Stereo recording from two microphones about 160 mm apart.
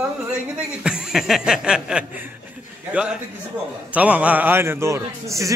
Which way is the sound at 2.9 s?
5° right (ahead or behind).